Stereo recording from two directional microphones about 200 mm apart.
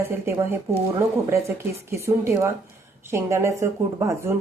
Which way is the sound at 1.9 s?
15° right (ahead or behind).